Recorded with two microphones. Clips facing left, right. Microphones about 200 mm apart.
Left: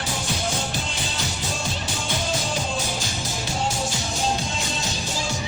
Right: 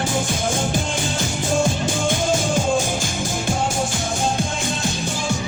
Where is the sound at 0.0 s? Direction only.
50° right (ahead or behind).